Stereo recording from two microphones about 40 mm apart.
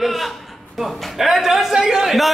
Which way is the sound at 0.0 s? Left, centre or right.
Centre.